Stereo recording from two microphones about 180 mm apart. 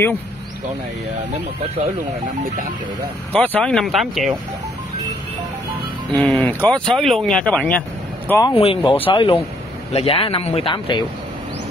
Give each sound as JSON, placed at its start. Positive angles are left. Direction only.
{"t": 3.3, "sound": "speech", "side_deg": 5}
{"t": 6.1, "sound": "speech", "side_deg": 5}
{"t": 8.3, "sound": "speech", "side_deg": 20}
{"t": 8.5, "sound": "speech", "side_deg": 30}